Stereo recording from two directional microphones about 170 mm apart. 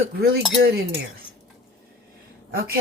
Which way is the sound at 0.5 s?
75° right (ahead or behind).